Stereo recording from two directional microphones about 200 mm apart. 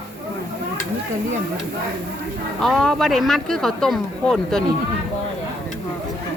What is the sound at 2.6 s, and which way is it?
Speech, centre (ahead or behind).